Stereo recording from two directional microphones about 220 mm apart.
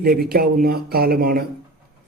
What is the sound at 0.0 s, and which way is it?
A man's voice, 45° right (ahead or behind).